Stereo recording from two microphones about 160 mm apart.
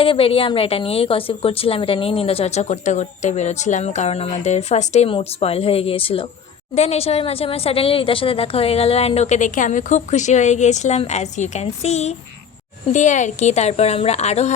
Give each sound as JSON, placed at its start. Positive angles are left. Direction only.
{"t": 0.0, "sound": "a woman's voice", "side_deg": 35}